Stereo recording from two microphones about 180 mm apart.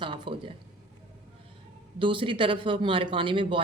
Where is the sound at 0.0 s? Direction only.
30° right (ahead or behind).